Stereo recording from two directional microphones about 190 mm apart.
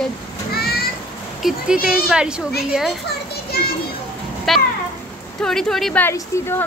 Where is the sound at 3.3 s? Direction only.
55° left (ahead or behind).